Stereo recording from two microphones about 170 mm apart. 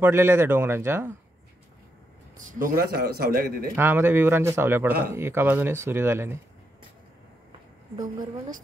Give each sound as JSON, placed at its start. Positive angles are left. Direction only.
{"t": 0.0, "sound": "speech", "side_deg": -15}
{"t": 2.3, "sound": "a man's voice", "side_deg": -50}
{"t": 3.7, "sound": "speech", "side_deg": -15}